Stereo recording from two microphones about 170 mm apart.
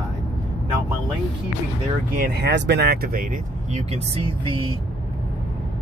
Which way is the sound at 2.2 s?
75° right (ahead or behind).